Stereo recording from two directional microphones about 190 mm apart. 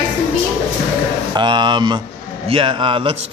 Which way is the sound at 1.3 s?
25° right (ahead or behind).